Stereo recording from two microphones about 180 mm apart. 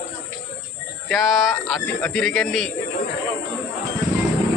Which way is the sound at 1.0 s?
Centre (ahead or behind).